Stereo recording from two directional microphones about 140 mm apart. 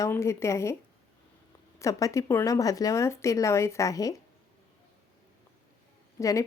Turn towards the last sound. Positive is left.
turn(degrees=25)  # may be behind; listen again after turning